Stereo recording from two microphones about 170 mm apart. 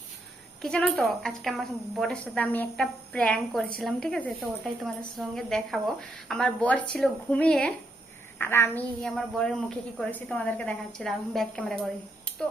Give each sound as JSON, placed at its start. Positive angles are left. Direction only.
{"t": 0.6, "sound": "a woman's voice", "side_deg": 5}
{"t": 9.0, "sound": "a woman's voice", "side_deg": 5}